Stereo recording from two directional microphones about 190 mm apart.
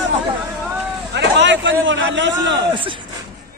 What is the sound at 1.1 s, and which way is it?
Vehicle, 70° right (ahead or behind).